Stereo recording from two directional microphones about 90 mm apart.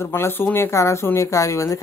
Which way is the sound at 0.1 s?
25° left (ahead or behind).